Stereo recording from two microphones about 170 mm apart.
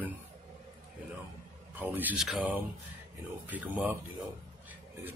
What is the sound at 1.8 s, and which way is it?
Speech, 10° right (ahead or behind).